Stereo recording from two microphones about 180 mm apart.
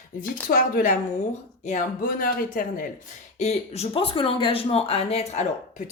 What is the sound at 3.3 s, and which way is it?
A woman's voice, 35° left (ahead or behind).